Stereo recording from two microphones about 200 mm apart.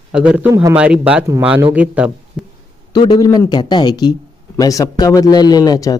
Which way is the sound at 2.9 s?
20° left (ahead or behind).